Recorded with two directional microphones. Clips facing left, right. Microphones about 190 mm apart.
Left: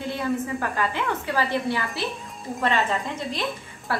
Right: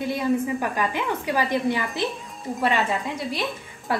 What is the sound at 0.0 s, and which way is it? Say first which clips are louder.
A woman's voice: right 3 dB; 15° right (ahead or behind).